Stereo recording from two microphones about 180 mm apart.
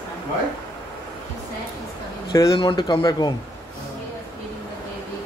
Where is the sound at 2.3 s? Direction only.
20° left (ahead or behind).